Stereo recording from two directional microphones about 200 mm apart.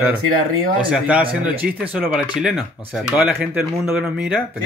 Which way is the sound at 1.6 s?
50° right (ahead or behind).